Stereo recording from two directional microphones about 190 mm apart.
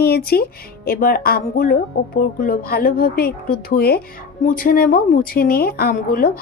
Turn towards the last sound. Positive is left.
turn(degrees=50)  # may be behind; listen again after turning